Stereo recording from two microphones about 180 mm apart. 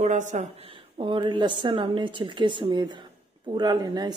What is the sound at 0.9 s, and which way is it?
Speech, 30° right (ahead or behind).